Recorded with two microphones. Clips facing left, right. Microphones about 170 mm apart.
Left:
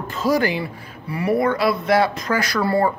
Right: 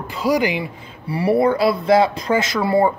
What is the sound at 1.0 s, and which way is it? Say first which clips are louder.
Speech: right 3 dB; 30° right (ahead or behind).